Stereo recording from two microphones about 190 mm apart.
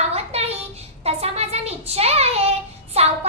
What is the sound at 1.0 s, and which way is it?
Child singing, 30° right (ahead or behind).